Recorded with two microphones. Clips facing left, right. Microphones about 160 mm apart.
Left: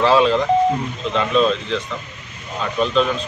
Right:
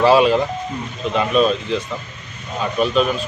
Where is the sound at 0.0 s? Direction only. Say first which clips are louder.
Right 2 dB; 10° right (ahead or behind).